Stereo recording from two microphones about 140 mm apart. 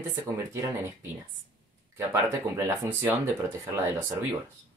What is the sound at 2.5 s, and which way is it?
Speech, 15° right (ahead or behind).